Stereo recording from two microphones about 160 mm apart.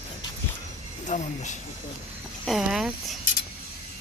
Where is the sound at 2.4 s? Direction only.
Centre (ahead or behind).